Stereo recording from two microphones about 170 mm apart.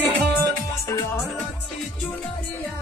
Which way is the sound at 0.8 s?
20° left (ahead or behind).